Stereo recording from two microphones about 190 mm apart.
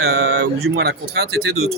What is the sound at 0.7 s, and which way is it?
Speech, 55° right (ahead or behind).